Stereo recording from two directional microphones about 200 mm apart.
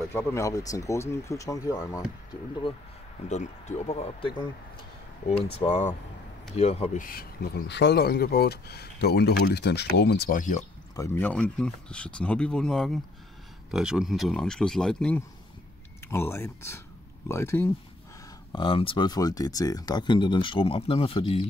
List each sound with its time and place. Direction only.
0.1 s speech: 10° left (ahead or behind)
3.3 s speech: 35° left (ahead or behind); by 10.4 s 55° left (ahead or behind)
11.0 s speech: 10° left (ahead or behind)
18.5 s speech: 25° left (ahead or behind)